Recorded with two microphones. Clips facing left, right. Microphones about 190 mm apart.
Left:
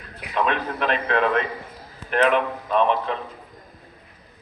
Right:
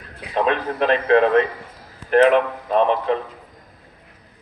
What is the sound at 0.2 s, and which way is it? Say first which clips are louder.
A man's voice: right 3 dB; 30° right (ahead or behind).